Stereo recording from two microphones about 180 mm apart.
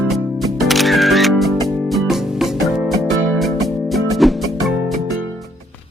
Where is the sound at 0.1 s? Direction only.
Centre (ahead or behind).